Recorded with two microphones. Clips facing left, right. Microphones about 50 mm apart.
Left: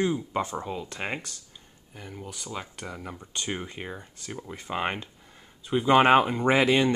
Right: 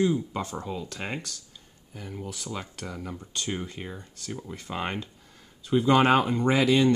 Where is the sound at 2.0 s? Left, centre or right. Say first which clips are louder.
Right 2 dB; centre.